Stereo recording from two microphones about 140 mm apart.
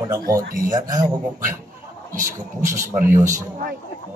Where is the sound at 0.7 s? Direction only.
30° right (ahead or behind).